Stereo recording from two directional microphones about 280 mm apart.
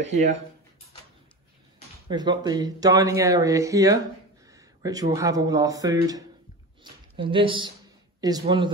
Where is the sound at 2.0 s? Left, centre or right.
Centre.